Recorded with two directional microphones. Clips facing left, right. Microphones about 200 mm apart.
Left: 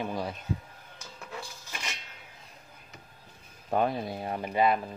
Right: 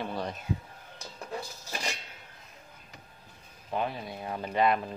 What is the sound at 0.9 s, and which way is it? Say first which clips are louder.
Dishes: right 4 dB; 40° right (ahead or behind).